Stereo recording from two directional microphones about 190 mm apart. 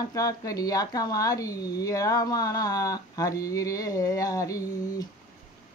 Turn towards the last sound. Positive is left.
turn(degrees=15)  # may be behind; listen again after turning